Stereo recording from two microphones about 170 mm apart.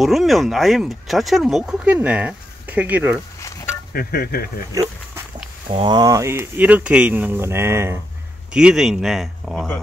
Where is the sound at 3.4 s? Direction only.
20° left (ahead or behind).